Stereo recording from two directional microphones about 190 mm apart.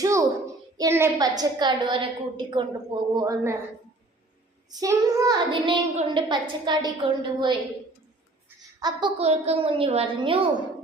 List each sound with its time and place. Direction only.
0.0 s a sound: 15° right (ahead or behind)
0.8 s a child's voice: 15° right (ahead or behind)
4.7 s a woman's voice: 20° right (ahead or behind)
8.8 s a woman's voice: 25° right (ahead or behind)